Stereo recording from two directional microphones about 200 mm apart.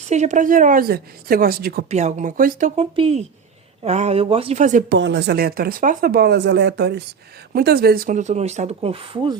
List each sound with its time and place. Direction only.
0.1 s a woman's voice: 35° right (ahead or behind)
1.9 s a woman's voice: 35° right (ahead or behind)
4.9 s speech: 65° right (ahead or behind); by 9.4 s 25° right (ahead or behind)